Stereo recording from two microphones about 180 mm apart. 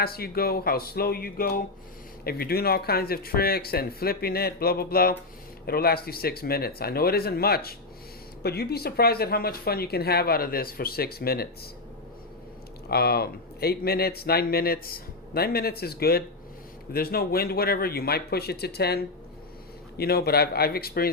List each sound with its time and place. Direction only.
0.0 s speech: 55° left (ahead or behind)
12.9 s speech: 60° left (ahead or behind)